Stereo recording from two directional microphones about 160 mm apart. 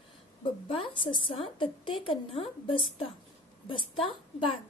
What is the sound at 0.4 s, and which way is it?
A woman's voice, 35° left (ahead or behind).